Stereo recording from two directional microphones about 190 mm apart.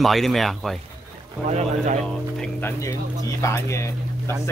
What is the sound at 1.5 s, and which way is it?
Speech, 35° right (ahead or behind).